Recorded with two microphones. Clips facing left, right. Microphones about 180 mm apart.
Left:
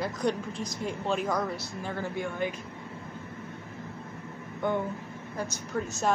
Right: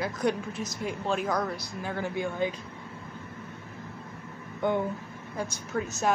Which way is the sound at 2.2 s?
20° right (ahead or behind).